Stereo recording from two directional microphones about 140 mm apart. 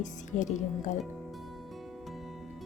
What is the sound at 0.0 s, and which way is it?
Speech, 60° left (ahead or behind).